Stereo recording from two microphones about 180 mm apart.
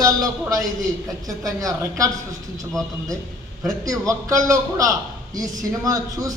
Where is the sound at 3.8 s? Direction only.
20° right (ahead or behind).